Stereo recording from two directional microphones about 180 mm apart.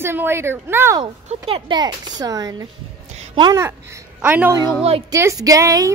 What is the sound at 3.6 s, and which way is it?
A woman's voice, 10° right (ahead or behind).